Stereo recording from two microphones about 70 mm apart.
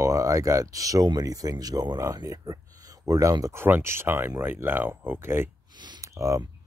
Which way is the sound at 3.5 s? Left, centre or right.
Right.